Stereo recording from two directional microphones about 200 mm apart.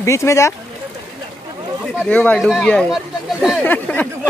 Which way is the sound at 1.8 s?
Centre (ahead or behind).